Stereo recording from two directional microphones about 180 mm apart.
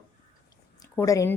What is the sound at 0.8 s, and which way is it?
Speech, 15° left (ahead or behind).